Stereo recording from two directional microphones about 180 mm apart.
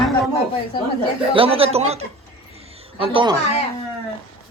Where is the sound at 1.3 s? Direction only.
30° right (ahead or behind).